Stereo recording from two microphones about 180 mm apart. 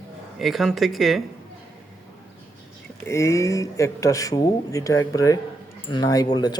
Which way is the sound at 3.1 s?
15° left (ahead or behind).